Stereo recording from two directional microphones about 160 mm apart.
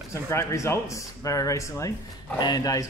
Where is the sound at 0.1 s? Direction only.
20° left (ahead or behind).